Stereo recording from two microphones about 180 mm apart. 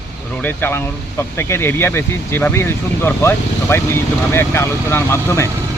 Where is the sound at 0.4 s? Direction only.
10° left (ahead or behind).